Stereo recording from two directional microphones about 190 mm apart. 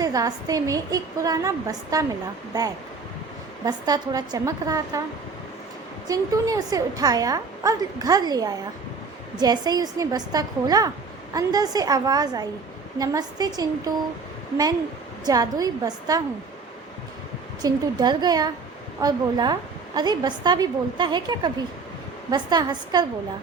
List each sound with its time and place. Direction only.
0.0 s a woman's voice: 20° right (ahead or behind)
6.1 s a woman's voice: 15° right (ahead or behind)
15.2 s a woman's voice: 20° right (ahead or behind)
17.6 s a woman's voice: 20° right (ahead or behind)